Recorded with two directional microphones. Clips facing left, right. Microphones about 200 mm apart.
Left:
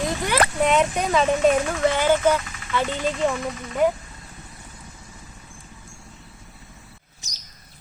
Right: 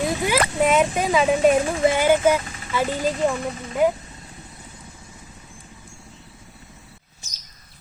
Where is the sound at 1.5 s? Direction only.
30° right (ahead or behind).